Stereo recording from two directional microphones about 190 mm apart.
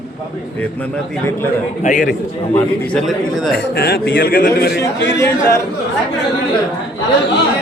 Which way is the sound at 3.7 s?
55° left (ahead or behind).